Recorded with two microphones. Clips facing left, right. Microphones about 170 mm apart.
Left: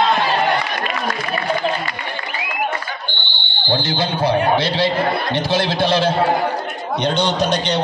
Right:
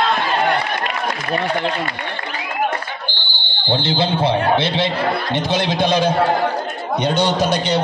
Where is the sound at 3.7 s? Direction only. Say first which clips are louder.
Right 2 dB; 30° right (ahead or behind).